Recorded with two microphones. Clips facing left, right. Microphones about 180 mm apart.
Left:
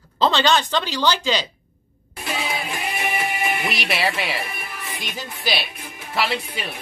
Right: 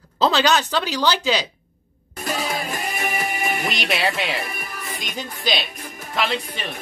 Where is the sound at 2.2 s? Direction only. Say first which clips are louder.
Right 2 dB; 45° right (ahead or behind).